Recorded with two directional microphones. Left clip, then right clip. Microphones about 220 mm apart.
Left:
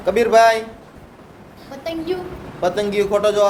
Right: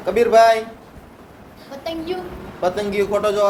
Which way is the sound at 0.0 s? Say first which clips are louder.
Even; 25° left (ahead or behind).